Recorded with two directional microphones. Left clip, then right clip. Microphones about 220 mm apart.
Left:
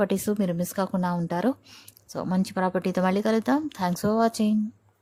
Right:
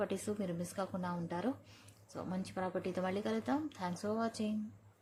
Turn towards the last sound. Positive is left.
turn(degrees=45)  # may be behind; listen again after turning